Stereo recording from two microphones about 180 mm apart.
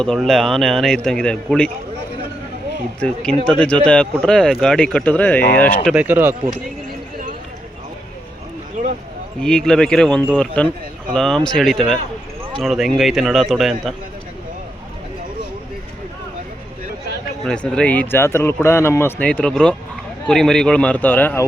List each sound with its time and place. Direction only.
0.0 s speech: centre (ahead or behind)
3.4 s speech: 5° left (ahead or behind)
5.9 s speech: 10° right (ahead or behind)
8.8 s a sound: 45° right (ahead or behind)
9.4 s speech: 5° left (ahead or behind)
17.4 s speech: 5° left (ahead or behind)